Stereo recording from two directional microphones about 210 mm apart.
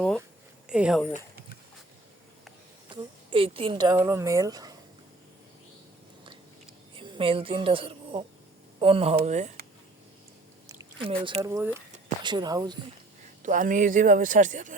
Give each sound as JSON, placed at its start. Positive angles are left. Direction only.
{"t": 0.7, "sound": "speech", "side_deg": -5}
{"t": 2.9, "sound": "speech", "side_deg": -25}
{"t": 6.9, "sound": "speech", "side_deg": -25}
{"t": 10.8, "sound": "a sound", "side_deg": -25}
{"t": 11.2, "sound": "speech", "side_deg": -25}
{"t": 11.4, "sound": "speech", "side_deg": -10}
{"t": 13.4, "sound": "speech", "side_deg": -40}